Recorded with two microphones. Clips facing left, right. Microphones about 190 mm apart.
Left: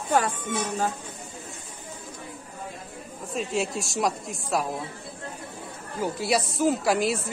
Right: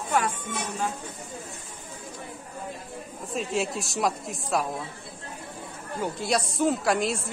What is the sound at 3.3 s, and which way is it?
Speech, centre (ahead or behind).